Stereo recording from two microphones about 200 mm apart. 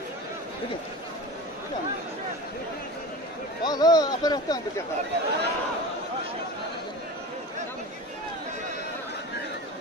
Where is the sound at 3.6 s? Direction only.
20° left (ahead or behind).